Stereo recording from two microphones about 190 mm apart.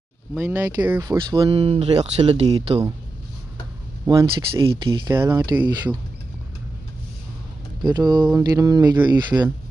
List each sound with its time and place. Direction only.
0.3 s speech: 10° right (ahead or behind)
1.3 s speech: 30° right (ahead or behind)
4.0 s speech: 15° right (ahead or behind)
7.8 s speech: 20° right (ahead or behind)